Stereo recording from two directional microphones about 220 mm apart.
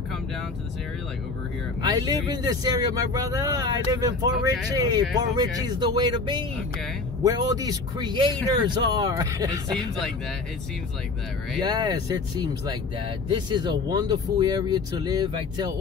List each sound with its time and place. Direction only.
1.8 s speech: 20° right (ahead or behind)
11.6 s speech: 20° right (ahead or behind)